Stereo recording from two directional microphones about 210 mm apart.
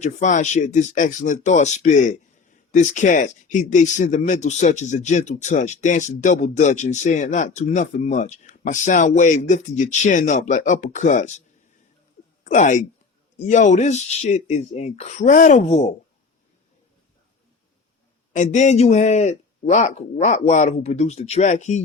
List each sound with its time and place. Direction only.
0.0 s speech: 35° left (ahead or behind)
12.5 s speech: 35° left (ahead or behind)
18.3 s speech: 35° left (ahead or behind)